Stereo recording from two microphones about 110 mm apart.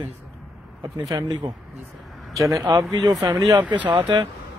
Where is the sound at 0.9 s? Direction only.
35° right (ahead or behind).